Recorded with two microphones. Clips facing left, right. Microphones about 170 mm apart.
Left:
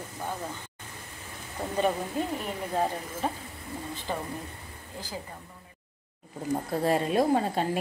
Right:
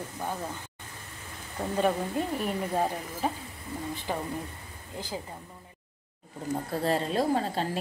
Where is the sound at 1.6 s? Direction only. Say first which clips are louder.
Right 1 dB; centre (ahead or behind).